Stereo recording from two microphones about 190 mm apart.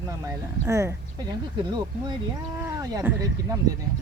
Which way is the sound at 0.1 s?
15° right (ahead or behind).